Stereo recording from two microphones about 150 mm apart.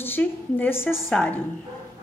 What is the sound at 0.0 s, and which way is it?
Speech, 15° left (ahead or behind).